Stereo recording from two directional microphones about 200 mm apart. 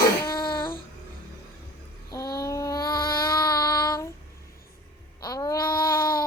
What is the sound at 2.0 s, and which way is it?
Child singing, 15° left (ahead or behind).